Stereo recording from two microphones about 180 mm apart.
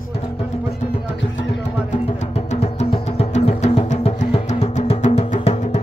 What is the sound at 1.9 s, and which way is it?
Music, 35° left (ahead or behind).